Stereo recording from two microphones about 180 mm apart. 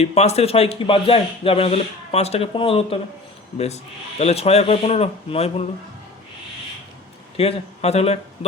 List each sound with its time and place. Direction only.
0.0 s speech: 35° left (ahead or behind)
4.2 s speech: 35° left (ahead or behind)
7.3 s speech: 35° left (ahead or behind)